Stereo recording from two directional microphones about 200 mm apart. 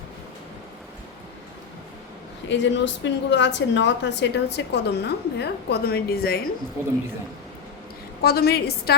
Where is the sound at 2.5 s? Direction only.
65° left (ahead or behind).